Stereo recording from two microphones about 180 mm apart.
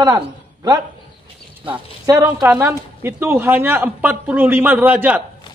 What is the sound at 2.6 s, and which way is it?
A woman's voice, 15° right (ahead or behind).